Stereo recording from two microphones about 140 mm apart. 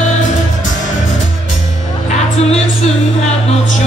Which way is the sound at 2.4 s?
50° left (ahead or behind).